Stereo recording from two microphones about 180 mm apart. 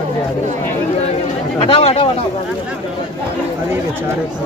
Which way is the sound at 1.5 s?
30° left (ahead or behind).